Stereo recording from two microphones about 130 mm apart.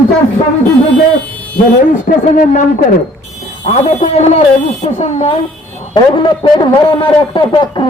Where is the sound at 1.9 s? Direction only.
85° left.